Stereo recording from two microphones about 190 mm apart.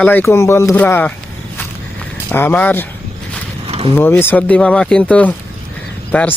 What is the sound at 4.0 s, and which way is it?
Speech, 10° left (ahead or behind).